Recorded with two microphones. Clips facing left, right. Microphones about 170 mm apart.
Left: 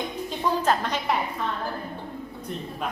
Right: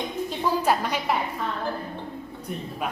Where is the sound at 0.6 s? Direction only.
10° right (ahead or behind).